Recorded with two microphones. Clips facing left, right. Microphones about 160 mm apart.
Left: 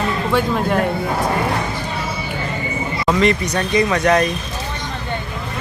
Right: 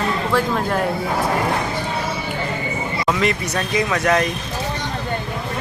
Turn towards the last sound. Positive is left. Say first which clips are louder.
# left 3 dB
turn(degrees=0)  # may be behind; listen again after turning